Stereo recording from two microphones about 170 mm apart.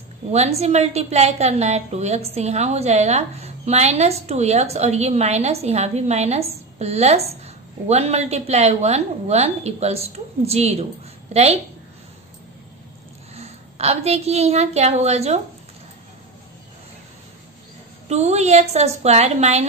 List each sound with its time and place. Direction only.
0.3 s a woman's voice: 40° right (ahead or behind)
13.3 s a woman's voice: 40° right (ahead or behind)
18.0 s a woman's voice: 40° right (ahead or behind)